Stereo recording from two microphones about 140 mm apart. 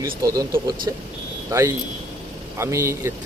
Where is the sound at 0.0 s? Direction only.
25° right (ahead or behind).